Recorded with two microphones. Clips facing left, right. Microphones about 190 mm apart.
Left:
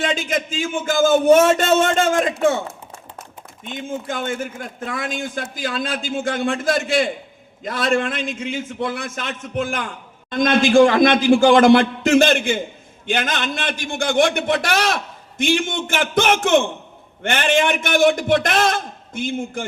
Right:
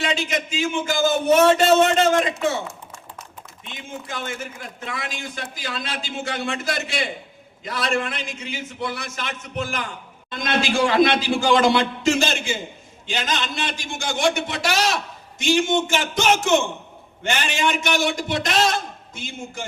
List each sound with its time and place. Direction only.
0.0 s a man's voice: 50° left (ahead or behind)
2.4 s typing: 55° left (ahead or behind)
3.7 s a man's voice: 50° left (ahead or behind)